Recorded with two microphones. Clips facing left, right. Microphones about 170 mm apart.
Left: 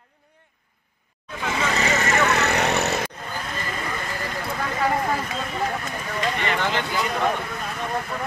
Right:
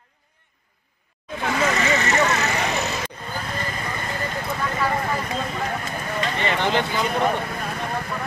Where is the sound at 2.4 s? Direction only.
65° left (ahead or behind).